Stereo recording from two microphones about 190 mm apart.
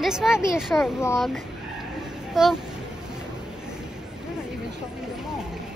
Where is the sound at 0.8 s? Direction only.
15° left (ahead or behind).